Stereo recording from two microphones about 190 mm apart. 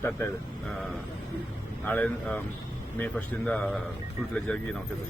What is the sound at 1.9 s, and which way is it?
A man's voice, 10° left (ahead or behind).